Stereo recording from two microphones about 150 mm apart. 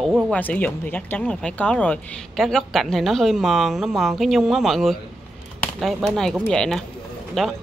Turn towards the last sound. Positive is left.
turn(degrees=0)  # may be behind; listen again after turning